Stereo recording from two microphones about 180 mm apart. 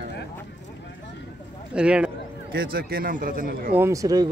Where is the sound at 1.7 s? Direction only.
5° right (ahead or behind).